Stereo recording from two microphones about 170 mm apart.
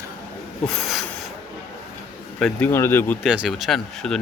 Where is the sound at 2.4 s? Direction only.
10° left (ahead or behind).